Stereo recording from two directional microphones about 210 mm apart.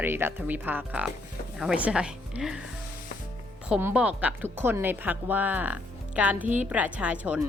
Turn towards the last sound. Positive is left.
turn(degrees=-5)  # may be behind; listen again after turning